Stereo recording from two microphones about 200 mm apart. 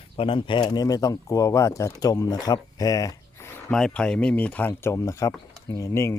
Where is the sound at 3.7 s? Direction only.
5° left (ahead or behind).